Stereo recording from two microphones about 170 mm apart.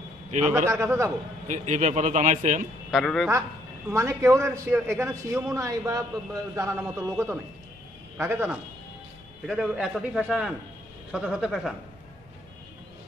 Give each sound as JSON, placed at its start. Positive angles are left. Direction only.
{"t": 0.3, "sound": "a man's voice", "side_deg": -45}
{"t": 0.7, "sound": "a man's voice", "side_deg": -15}
{"t": 1.5, "sound": "a man's voice", "side_deg": -45}
{"t": 2.9, "sound": "a man's voice", "side_deg": 0}
{"t": 3.9, "sound": "a man's voice", "side_deg": -15}
{"t": 9.5, "sound": "a man's voice", "side_deg": 0}